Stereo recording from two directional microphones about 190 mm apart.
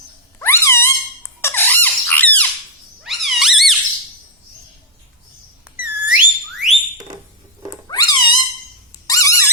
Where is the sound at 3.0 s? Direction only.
Centre (ahead or behind).